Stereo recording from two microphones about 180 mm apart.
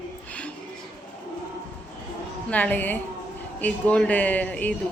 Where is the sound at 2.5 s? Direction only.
10° left (ahead or behind).